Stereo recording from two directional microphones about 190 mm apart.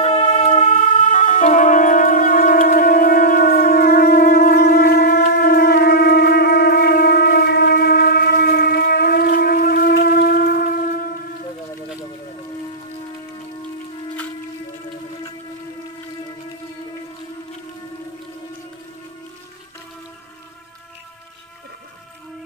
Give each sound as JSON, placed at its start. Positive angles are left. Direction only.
{"t": 0.0, "sound": "music", "side_deg": 35}